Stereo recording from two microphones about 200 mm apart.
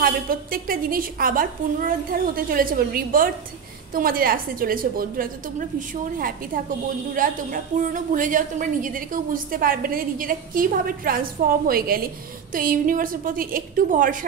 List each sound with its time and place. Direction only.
0.0 s a woman's voice: 45° right (ahead or behind)